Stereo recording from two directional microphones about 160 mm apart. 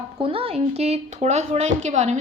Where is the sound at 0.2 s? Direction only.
35° right (ahead or behind).